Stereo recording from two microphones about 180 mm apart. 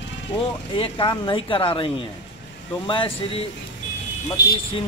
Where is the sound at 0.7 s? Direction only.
25° left (ahead or behind).